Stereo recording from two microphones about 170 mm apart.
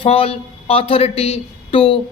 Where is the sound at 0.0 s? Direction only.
35° left (ahead or behind).